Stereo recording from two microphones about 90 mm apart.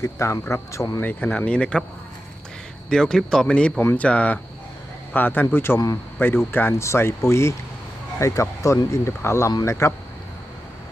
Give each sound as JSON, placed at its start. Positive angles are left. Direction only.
{"t": 0.0, "sound": "speech", "side_deg": 35}
{"t": 1.0, "sound": "speech", "side_deg": 15}
{"t": 2.9, "sound": "speech", "side_deg": 5}